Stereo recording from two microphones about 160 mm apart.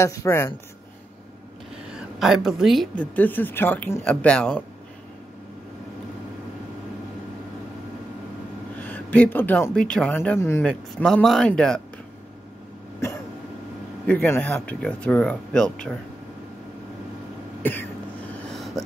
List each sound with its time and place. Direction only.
0.0 s a woman's voice: 20° left (ahead or behind)
1.9 s a woman's voice: 5° right (ahead or behind)
8.7 s speech: 10° left (ahead or behind)
10.6 s speech: 5° left (ahead or behind)
14.2 s a woman's voice: 10° left (ahead or behind)
17.6 s a sound: 10° left (ahead or behind)